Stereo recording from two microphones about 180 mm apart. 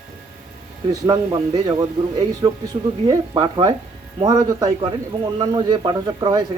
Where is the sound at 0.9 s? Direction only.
25° right (ahead or behind).